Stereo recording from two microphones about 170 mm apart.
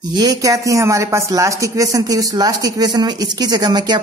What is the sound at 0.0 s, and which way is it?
Speech, 25° right (ahead or behind).